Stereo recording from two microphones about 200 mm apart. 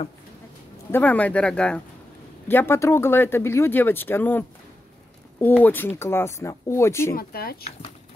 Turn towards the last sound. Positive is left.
turn(degrees=50)  # may be behind; listen again after turning